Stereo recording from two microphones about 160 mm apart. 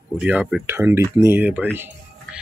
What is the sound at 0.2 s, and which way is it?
Speech, 5° right (ahead or behind).